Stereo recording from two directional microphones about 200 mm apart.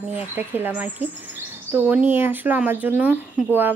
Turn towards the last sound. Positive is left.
turn(degrees=-10)  # may be behind; listen again after turning